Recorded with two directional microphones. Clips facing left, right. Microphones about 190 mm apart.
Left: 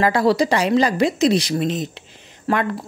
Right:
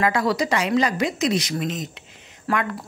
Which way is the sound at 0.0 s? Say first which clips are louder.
Left 5 dB; 30° left (ahead or behind).